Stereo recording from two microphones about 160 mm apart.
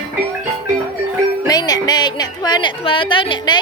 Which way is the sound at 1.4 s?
25° left (ahead or behind).